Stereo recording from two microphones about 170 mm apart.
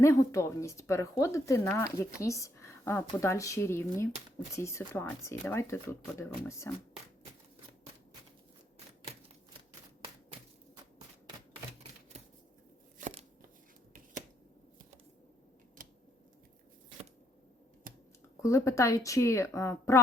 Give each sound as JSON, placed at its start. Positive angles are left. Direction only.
{"t": 0.0, "sound": "speech", "side_deg": 15}
{"t": 15.8, "sound": "a sound", "side_deg": -55}
{"t": 17.9, "sound": "scissors", "side_deg": -55}
{"t": 18.4, "sound": "speech", "side_deg": 20}